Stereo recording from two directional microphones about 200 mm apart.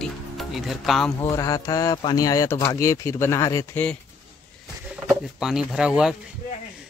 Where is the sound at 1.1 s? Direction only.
15° left (ahead or behind).